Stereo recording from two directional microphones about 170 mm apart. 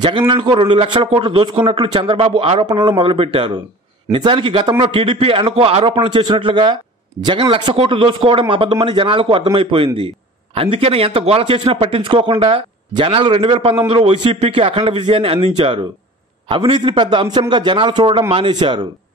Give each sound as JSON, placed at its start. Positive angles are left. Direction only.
{"t": 0.3, "sound": "a man's voice", "side_deg": -30}